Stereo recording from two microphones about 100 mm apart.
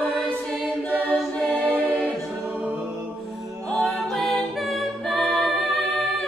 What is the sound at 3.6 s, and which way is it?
A capella, 5° left (ahead or behind).